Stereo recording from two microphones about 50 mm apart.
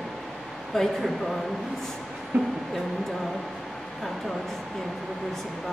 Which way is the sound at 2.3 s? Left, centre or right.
Right.